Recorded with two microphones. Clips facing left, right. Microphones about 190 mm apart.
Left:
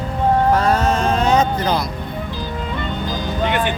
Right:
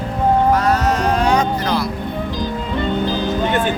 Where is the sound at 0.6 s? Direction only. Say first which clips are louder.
Even; 30° left (ahead or behind).